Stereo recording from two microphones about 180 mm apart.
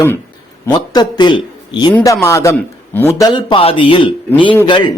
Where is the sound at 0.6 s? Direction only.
20° left (ahead or behind).